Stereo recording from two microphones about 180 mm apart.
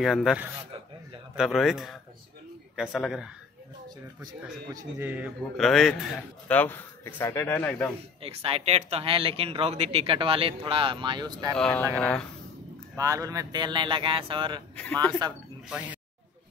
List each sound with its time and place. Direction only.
0.0 s a man's voice: centre (ahead or behind)
4.7 s a man's voice: 10° right (ahead or behind)
6.6 s speech: 10° left (ahead or behind)
8.2 s speech: 30° right (ahead or behind)
11.5 s a man's voice: 5° left (ahead or behind)
12.9 s speech: 20° right (ahead or behind)
14.8 s speech: 10° left (ahead or behind)